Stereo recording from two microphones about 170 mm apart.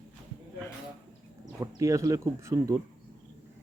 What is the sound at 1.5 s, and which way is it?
Speech, 20° right (ahead or behind).